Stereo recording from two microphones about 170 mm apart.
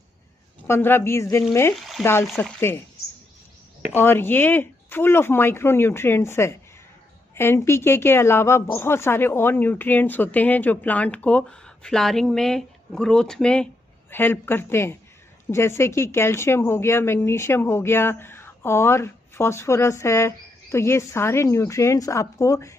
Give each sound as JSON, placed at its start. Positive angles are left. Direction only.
{"t": 0.7, "sound": "a woman's voice", "side_deg": 15}
{"t": 2.0, "sound": "speech", "side_deg": 0}
{"t": 2.4, "sound": "a woman's voice", "side_deg": 15}
{"t": 4.0, "sound": "a woman's voice", "side_deg": 15}